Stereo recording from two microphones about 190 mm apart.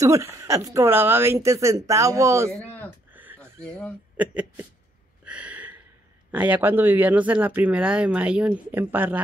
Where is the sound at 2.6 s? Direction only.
10° left (ahead or behind).